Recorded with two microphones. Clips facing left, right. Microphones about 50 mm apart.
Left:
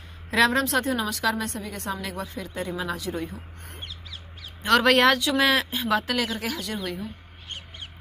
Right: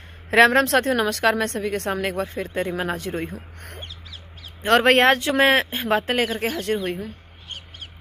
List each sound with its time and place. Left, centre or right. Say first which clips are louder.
0.3 s a woman's voice: right 6 dB; right
4.6 s speech: right 3 dB; right